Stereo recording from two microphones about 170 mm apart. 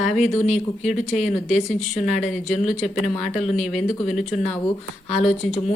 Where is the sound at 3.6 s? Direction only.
Centre (ahead or behind).